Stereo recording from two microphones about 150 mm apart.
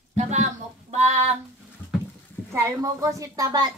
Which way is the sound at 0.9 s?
50° right (ahead or behind).